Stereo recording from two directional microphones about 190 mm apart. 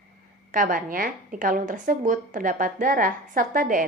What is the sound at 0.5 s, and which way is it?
A woman's voice, 45° right (ahead or behind).